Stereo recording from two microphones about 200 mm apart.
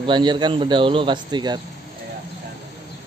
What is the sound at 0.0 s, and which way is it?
Speech, 25° right (ahead or behind).